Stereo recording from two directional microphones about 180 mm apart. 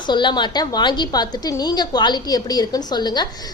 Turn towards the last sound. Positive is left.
turn(degrees=25)  # may be behind; listen again after turning